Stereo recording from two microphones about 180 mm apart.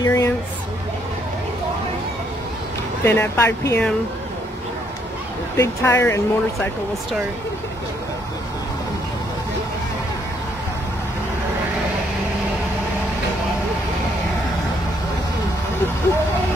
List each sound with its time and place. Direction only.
0.0 s a sound: 20° left (ahead or behind)
3.0 s speech: 15° left (ahead or behind)
5.6 s speech: 15° left (ahead or behind)